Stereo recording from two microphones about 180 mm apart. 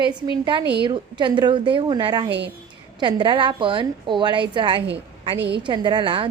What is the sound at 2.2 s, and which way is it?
Speech, 75° right (ahead or behind).